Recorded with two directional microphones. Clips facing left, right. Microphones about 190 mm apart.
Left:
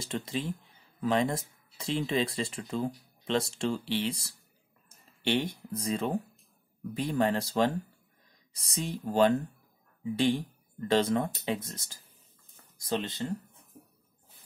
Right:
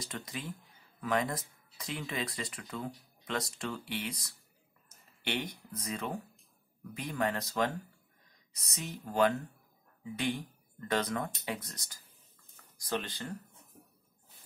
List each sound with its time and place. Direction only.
0.0 s speech: 25° left (ahead or behind)